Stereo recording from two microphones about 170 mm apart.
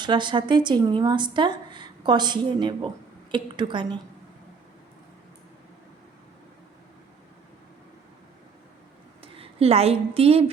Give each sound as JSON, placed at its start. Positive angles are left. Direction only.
{"t": 0.0, "sound": "speech", "side_deg": -25}
{"t": 9.2, "sound": "a woman's voice", "side_deg": -35}